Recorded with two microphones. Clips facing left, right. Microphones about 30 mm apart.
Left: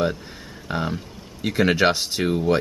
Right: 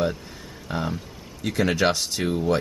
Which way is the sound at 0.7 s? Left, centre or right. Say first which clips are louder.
Left 2 dB; centre.